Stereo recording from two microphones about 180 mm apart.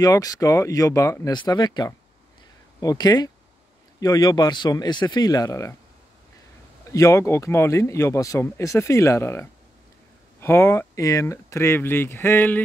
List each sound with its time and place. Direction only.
0.0 s speech: 20° left (ahead or behind)
6.9 s speech: 15° left (ahead or behind)